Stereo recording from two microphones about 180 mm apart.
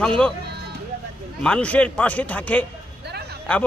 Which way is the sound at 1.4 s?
5° left (ahead or behind).